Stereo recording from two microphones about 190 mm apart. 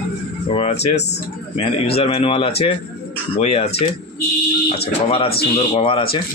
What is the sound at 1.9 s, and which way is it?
Speech, 30° left (ahead or behind).